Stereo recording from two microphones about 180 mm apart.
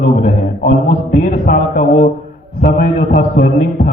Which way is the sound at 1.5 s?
50° left (ahead or behind).